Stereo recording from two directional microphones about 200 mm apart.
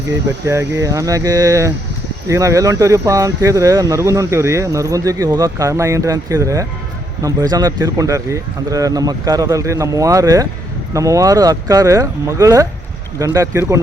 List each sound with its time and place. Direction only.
0.4 s speech: 15° right (ahead or behind)